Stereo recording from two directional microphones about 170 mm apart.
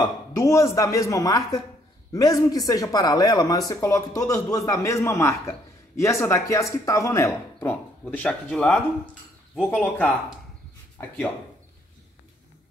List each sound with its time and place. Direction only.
0.4 s speech: 20° left (ahead or behind)